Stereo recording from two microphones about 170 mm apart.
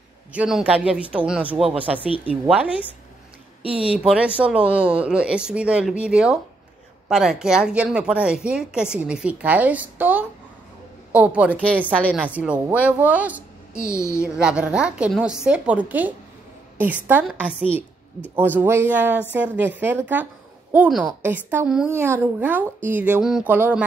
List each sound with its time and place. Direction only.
0.3 s a woman's voice: 5° right (ahead or behind)
13.7 s speech: 15° left (ahead or behind)
14.2 s a woman's voice: 5° right (ahead or behind)